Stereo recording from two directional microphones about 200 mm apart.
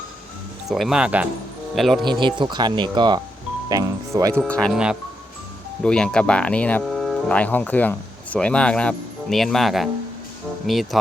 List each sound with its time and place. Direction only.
0.7 s speech: centre (ahead or behind)
2.0 s speech: 25° right (ahead or behind)
4.3 s speech: 5° left (ahead or behind)